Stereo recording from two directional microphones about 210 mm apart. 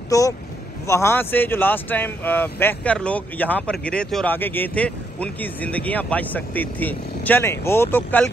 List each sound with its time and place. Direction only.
0.1 s speech: 15° left (ahead or behind)